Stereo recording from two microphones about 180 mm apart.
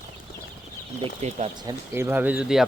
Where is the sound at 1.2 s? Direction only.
40° right (ahead or behind).